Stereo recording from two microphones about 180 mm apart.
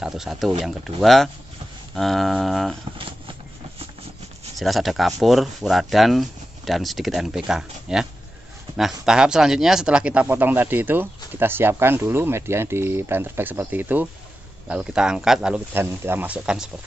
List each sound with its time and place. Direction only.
0.0 s speech: centre (ahead or behind)
3.0 s a sound: 30° right (ahead or behind)
4.6 s speech: centre (ahead or behind)